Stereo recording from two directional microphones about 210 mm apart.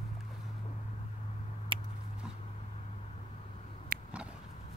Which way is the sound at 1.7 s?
25° right (ahead or behind).